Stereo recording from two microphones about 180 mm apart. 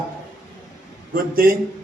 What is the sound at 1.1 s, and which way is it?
Speech, 55° right (ahead or behind).